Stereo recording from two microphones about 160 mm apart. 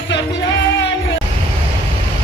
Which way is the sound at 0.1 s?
90° left.